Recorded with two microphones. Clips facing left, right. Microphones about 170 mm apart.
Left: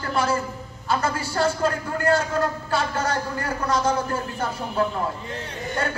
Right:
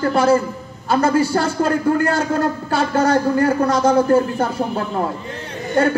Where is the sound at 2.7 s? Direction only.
45° right (ahead or behind).